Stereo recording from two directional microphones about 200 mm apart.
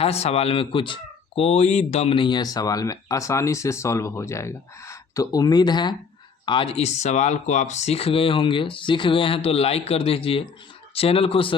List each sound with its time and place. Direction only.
0.0 s speech: 30° left (ahead or behind)